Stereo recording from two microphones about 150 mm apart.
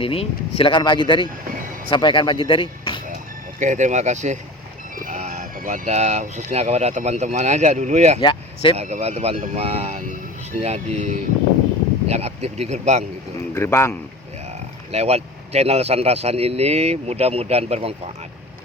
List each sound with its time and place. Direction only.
0.0 s speech: 40° left (ahead or behind)
3.6 s speech: 55° right (ahead or behind)
5.0 s music: 50° right (ahead or behind)
5.5 s speech: 60° right (ahead or behind)
8.2 s speech: 30° left (ahead or behind)
8.7 s speech: 45° right (ahead or behind)
13.5 s a man's voice: 15° left (ahead or behind)
14.9 s speech: 45° right (ahead or behind)